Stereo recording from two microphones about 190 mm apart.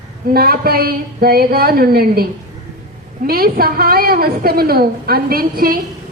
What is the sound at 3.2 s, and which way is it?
A woman's voice, 50° right (ahead or behind).